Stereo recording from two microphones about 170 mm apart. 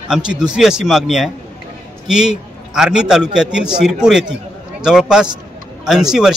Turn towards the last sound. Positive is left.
turn(degrees=-5)  # may be behind; listen again after turning